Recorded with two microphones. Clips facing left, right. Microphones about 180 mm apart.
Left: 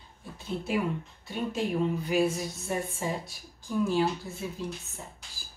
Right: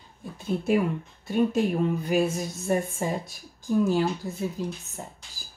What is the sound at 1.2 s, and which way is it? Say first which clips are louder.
A woman's voice: right 8 dB; 45° right (ahead or behind).